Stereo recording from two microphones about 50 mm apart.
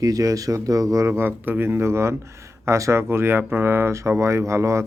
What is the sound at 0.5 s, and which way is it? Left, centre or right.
Speech, right.